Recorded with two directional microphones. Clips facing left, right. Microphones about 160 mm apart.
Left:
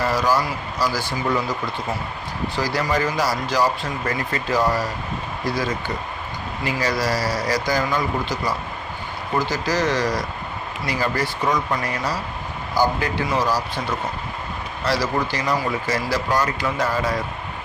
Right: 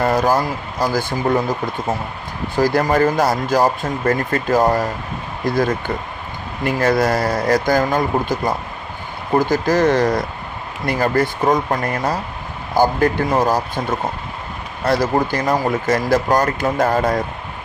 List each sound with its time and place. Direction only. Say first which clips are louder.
0.0 s speech: right 4 dB; 50° right (ahead or behind)